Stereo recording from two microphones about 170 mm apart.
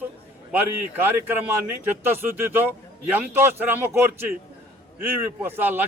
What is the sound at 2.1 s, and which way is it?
A man's voice, 10° right (ahead or behind).